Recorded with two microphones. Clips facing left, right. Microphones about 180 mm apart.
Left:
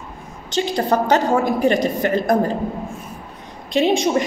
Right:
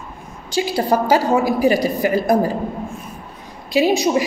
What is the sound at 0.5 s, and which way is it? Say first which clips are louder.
A woman's voice: right 1 dB; 5° right (ahead or behind).